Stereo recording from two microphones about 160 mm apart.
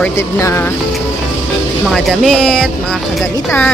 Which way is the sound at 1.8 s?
Centre (ahead or behind).